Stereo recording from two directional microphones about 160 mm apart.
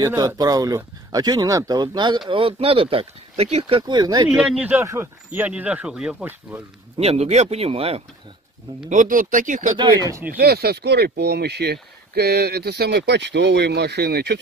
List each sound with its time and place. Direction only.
0.0 s speech: 20° right (ahead or behind)
4.4 s speech: 10° right (ahead or behind)
7.0 s speech: 40° right (ahead or behind)
8.9 s speech: 55° right (ahead or behind)
9.8 s speech: 25° right (ahead or behind)
10.3 s speech: 80° right